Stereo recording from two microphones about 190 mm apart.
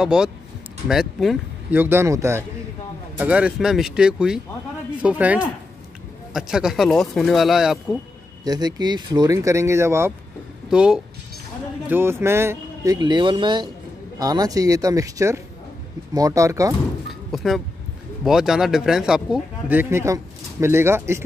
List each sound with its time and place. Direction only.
0.0 s speech: 5° right (ahead or behind)
8.5 s speech: 20° right (ahead or behind)
17.3 s speech: centre (ahead or behind)